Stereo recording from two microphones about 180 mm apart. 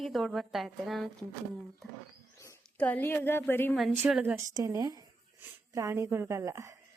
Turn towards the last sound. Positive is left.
turn(degrees=-15)  # may be behind; listen again after turning